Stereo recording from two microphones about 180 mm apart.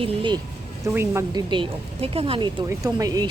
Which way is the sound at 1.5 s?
30° right (ahead or behind).